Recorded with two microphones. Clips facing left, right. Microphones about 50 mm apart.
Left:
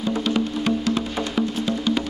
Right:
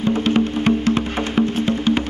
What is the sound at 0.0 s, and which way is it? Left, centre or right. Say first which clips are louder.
Music: right 5 dB; right.